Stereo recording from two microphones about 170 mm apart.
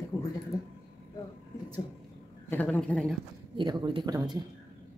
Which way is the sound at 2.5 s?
10° left (ahead or behind).